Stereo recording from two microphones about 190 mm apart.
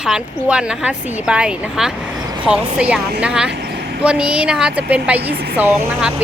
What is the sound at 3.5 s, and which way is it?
Vehicle, 60° right (ahead or behind).